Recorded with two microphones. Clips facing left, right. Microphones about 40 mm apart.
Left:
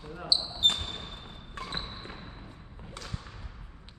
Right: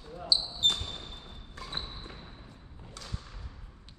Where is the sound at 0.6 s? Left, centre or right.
Left.